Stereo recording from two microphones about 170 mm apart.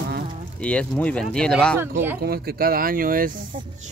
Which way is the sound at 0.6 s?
5° left (ahead or behind).